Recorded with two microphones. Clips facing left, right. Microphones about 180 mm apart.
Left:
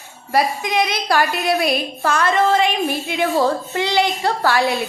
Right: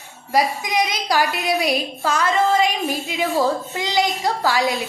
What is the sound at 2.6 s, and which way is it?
Speech, 65° left (ahead or behind).